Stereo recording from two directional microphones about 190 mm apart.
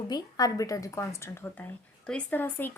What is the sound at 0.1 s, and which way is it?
A woman's voice, 20° left (ahead or behind).